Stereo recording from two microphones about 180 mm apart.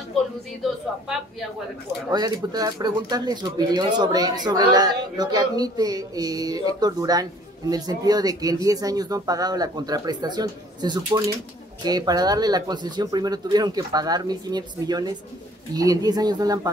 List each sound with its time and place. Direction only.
0.6 s a woman's voice: centre (ahead or behind)
2.0 s speech: 20° right (ahead or behind)